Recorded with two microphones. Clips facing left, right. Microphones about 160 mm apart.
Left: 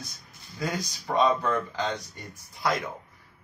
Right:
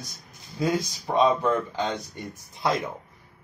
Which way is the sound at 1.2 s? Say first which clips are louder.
Right 3 dB; 20° right (ahead or behind).